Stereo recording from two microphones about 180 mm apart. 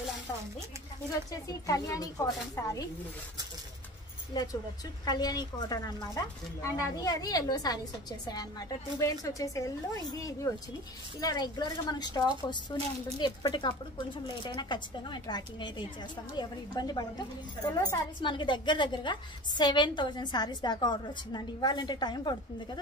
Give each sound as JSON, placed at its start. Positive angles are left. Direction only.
{"t": 1.3, "sound": "a woman's voice", "side_deg": 20}
{"t": 4.3, "sound": "a woman's voice", "side_deg": 20}
{"t": 18.2, "sound": "a woman's voice", "side_deg": 25}